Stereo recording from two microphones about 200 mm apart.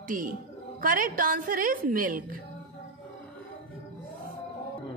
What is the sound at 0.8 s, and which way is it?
A woman's voice, 40° right (ahead or behind).